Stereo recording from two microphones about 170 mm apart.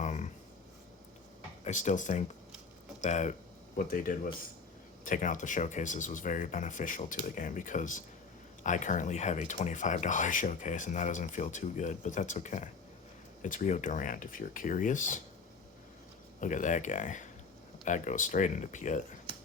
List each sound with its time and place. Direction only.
0.0 s writing: 45° left (ahead or behind)
1.6 s speech: 45° left (ahead or behind)
16.4 s speech: 50° left (ahead or behind)